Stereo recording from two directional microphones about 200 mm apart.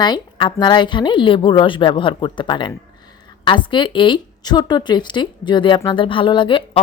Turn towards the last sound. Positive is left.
turn(degrees=25)  # may be behind; listen again after turning